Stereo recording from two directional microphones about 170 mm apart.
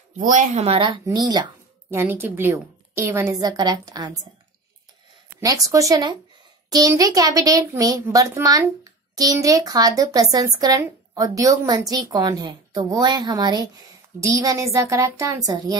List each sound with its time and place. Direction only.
0.2 s a child's voice: 50° right (ahead or behind); by 1.5 s 25° right (ahead or behind)
1.9 s a woman's voice: 15° right (ahead or behind)
5.4 s a child's voice: 20° right (ahead or behind)